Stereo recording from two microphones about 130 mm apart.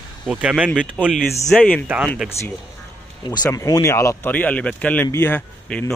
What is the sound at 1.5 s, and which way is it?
Speech, 15° left (ahead or behind).